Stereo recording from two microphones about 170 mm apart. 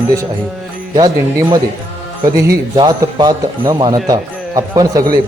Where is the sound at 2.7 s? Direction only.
25° right (ahead or behind).